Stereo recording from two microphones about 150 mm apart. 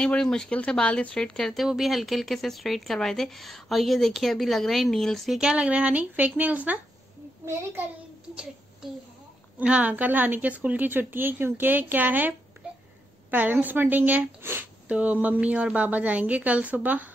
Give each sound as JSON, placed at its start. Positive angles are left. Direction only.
{"t": 0.0, "sound": "speech", "side_deg": 5}
{"t": 9.6, "sound": "speech", "side_deg": -10}